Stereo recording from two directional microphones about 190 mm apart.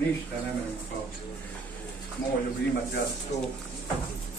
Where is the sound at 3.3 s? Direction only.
35° left (ahead or behind).